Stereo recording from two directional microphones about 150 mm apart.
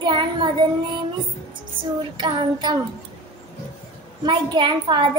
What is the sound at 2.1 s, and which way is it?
Speech, 30° right (ahead or behind).